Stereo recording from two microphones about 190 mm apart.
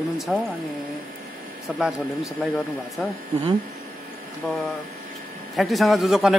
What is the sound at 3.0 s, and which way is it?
Speech, centre (ahead or behind).